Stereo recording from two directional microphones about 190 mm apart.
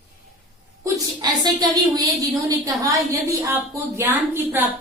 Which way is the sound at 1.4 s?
20° right (ahead or behind).